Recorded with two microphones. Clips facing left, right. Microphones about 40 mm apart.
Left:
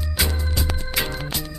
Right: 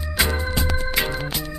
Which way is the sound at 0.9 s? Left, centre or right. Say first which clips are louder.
Left 1 dB; centre.